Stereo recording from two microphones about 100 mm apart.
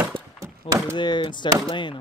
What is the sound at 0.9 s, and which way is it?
Speech, 50° left (ahead or behind).